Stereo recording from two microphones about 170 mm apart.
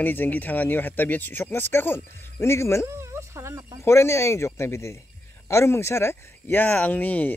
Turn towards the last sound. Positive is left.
turn(degrees=10)  # may be behind; listen again after turning